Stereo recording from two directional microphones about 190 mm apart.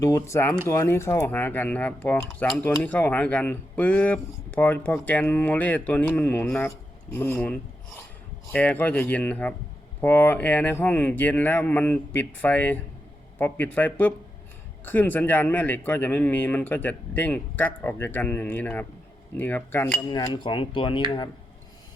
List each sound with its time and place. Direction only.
0.0 s speech: 15° left (ahead or behind)
20.1 s cutlery: 20° left (ahead or behind)